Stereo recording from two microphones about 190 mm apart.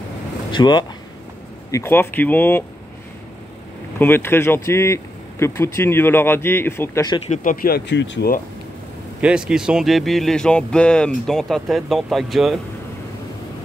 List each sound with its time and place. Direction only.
0.5 s speech: 25° left (ahead or behind)
1.7 s speech: 15° left (ahead or behind)
4.0 s speech: 10° left (ahead or behind)
7.2 s speech: 35° left (ahead or behind)
7.6 s speech: 60° left (ahead or behind)
9.2 s speech: 5° right (ahead or behind)